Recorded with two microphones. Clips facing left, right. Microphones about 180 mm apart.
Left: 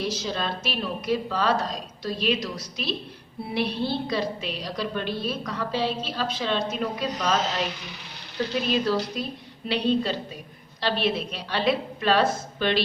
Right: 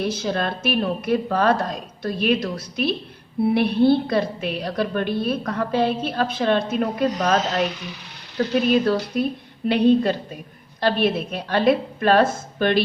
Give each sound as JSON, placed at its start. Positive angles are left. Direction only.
{"t": 0.0, "sound": "a woman's voice", "side_deg": -55}
{"t": 8.7, "sound": "a woman's voice", "side_deg": -55}